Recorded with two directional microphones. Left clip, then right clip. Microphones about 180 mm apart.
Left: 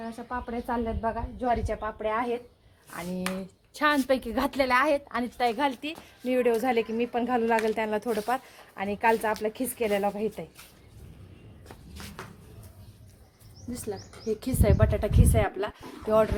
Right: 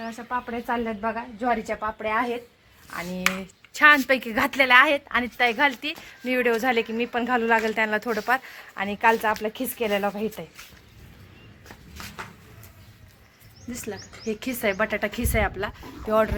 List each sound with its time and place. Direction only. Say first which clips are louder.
0.0 s a woman's voice: right 5 dB; 20° right (ahead or behind)
3.3 s speech: right 11 dB; 25° left (ahead or behind)
3.7 s a woman's voice: right 8 dB; centre (ahead or behind)
13.8 s a woman's voice: even; 10° right (ahead or behind)